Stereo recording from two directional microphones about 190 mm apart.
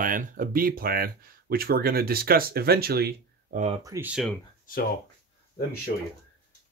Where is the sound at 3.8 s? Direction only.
15° right (ahead or behind).